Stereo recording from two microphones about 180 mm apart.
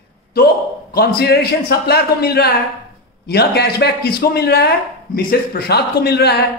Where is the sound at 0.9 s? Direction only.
60° left (ahead or behind).